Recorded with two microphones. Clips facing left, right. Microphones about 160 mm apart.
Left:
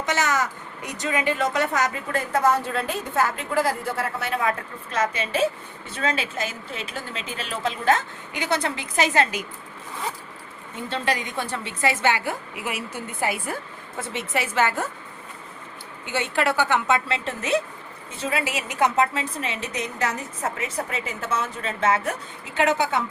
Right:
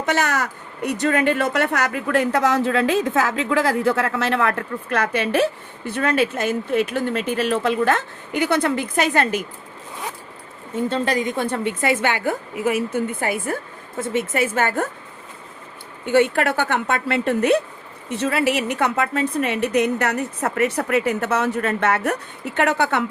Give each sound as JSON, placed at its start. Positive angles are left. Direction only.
{"t": 0.0, "sound": "speech", "side_deg": -60}
{"t": 10.8, "sound": "a woman's voice", "side_deg": -40}
{"t": 16.0, "sound": "speech", "side_deg": -55}
{"t": 18.1, "sound": "speech", "side_deg": -70}